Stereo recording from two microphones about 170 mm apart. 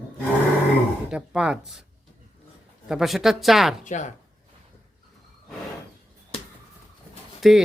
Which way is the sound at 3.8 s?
45° left (ahead or behind).